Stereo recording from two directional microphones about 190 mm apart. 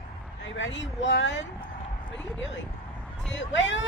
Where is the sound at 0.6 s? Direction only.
75° left (ahead or behind).